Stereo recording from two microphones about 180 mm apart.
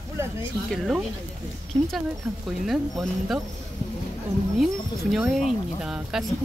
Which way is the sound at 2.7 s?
Centre (ahead or behind).